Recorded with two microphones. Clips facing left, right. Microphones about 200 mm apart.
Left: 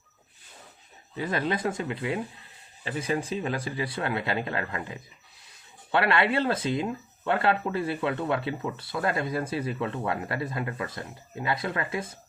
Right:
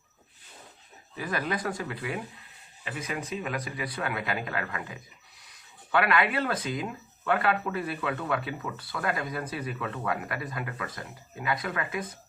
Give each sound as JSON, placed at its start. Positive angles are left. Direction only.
{"t": 1.1, "sound": "speech", "side_deg": 25}